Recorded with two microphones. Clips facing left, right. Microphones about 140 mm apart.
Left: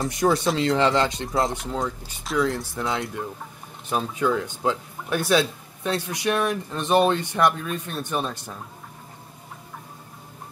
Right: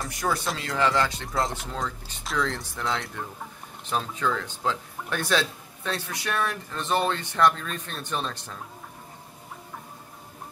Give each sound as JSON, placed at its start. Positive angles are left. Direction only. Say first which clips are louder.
{"t": 0.0, "sound": "speech", "louder": "left 7 dB", "side_deg": 20}
{"t": 3.9, "sound": "speech", "louder": "left 4 dB", "side_deg": 10}